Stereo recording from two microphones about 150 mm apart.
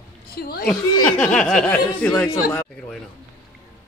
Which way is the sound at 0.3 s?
90° left.